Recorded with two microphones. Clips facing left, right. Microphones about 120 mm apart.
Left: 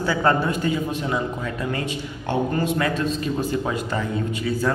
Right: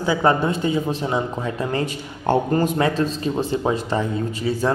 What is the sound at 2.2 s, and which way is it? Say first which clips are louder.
Speech: right 4 dB; 40° right (ahead or behind).